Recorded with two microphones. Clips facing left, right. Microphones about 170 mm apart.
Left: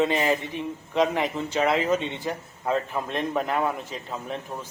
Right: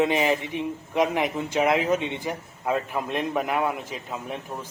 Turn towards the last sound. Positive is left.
turn(degrees=-10)  # may be behind; listen again after turning